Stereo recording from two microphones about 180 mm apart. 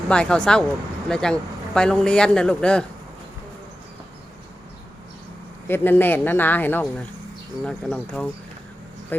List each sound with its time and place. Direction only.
0.1 s speech: 5° left (ahead or behind)
5.6 s speech: 10° left (ahead or behind)